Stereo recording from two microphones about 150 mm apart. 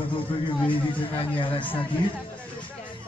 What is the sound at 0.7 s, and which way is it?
Speech, 35° left (ahead or behind).